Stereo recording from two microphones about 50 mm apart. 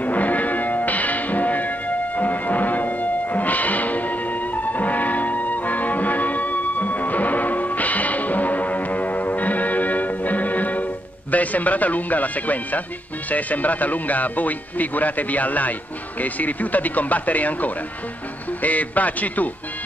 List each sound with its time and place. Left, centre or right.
0.0 s music: left
11.3 s speech: left